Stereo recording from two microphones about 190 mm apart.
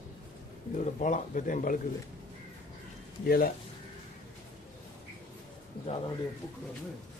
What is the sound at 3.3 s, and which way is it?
Speech, 50° left (ahead or behind).